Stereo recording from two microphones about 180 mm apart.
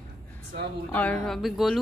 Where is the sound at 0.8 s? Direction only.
5° left (ahead or behind).